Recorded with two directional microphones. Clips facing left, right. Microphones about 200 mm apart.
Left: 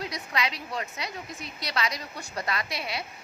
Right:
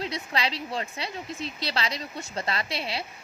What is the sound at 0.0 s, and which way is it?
A woman's voice, 30° right (ahead or behind).